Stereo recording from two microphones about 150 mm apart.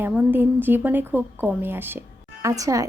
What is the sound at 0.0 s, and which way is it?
A woman's voice, 10° right (ahead or behind).